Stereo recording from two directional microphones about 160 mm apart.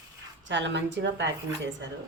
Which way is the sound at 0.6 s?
90° right.